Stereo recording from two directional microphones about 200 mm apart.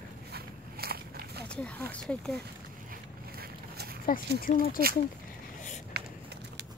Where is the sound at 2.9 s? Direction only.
50° right (ahead or behind).